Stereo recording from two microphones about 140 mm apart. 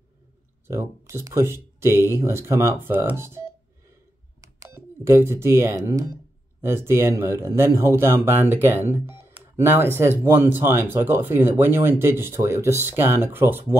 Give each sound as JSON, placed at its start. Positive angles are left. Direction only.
{"t": 0.7, "sound": "speech", "side_deg": -20}